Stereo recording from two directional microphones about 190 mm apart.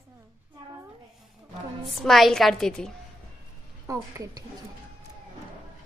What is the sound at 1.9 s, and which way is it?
A woman's voice, centre (ahead or behind).